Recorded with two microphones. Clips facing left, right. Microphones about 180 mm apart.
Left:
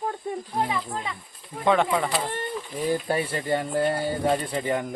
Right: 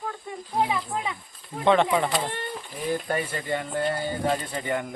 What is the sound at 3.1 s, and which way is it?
A man's voice, 30° left (ahead or behind).